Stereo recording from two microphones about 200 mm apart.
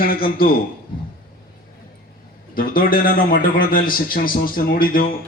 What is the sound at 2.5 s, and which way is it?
A man's voice, 45° left (ahead or behind).